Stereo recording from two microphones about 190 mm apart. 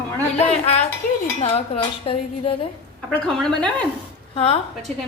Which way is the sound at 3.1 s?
5° left (ahead or behind).